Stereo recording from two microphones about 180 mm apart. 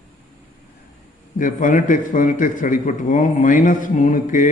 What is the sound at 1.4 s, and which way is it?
A man's voice, 45° left (ahead or behind).